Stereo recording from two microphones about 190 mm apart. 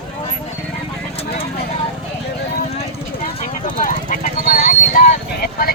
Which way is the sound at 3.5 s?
45° left (ahead or behind).